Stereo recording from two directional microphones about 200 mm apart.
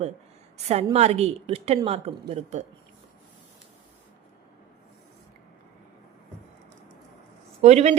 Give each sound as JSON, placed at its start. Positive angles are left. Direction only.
{"t": 0.5, "sound": "a woman's voice", "side_deg": -30}
{"t": 7.6, "sound": "a woman's voice", "side_deg": -35}